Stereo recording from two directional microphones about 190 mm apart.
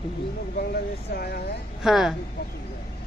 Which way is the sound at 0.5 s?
55° left (ahead or behind).